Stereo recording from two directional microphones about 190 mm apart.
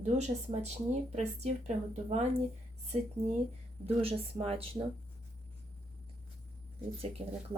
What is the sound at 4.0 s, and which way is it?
Speech, 30° right (ahead or behind).